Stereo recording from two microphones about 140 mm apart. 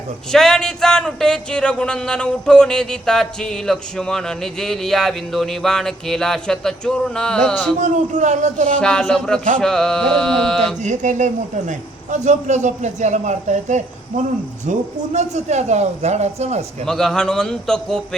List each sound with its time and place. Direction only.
0.3 s speech: 5° left (ahead or behind)
7.8 s speech: 60° right (ahead or behind)
8.8 s speech: 5° left (ahead or behind)
10.8 s a man's voice: 60° right (ahead or behind)
16.8 s speech: 5° left (ahead or behind)